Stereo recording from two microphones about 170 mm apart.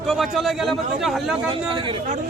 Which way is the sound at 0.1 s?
Centre (ahead or behind).